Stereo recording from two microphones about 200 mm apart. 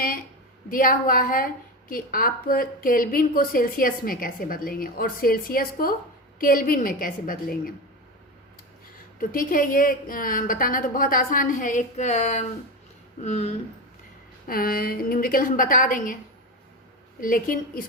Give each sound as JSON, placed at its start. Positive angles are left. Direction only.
{"t": 0.7, "sound": "a woman's voice", "side_deg": 45}
{"t": 9.1, "sound": "a woman's voice", "side_deg": 45}
{"t": 14.4, "sound": "a woman's voice", "side_deg": 45}
{"t": 17.2, "sound": "a woman's voice", "side_deg": 45}